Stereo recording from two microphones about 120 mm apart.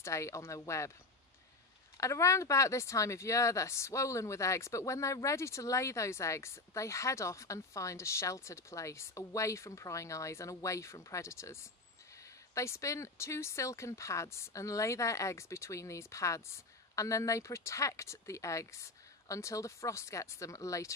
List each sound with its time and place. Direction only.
0.0 s speech: 25° left (ahead or behind)
2.0 s speech: 25° left (ahead or behind)
12.5 s speech: 25° left (ahead or behind)